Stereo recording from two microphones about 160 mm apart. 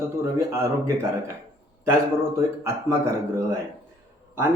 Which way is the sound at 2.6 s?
15° right (ahead or behind).